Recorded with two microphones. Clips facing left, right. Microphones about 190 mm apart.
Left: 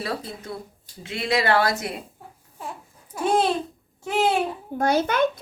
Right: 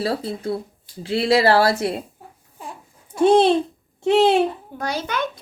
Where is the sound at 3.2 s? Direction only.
25° right (ahead or behind).